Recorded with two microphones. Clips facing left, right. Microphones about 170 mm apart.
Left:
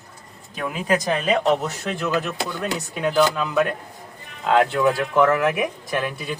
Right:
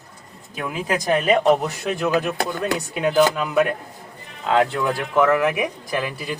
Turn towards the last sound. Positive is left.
turn(degrees=-5)  # may be behind; listen again after turning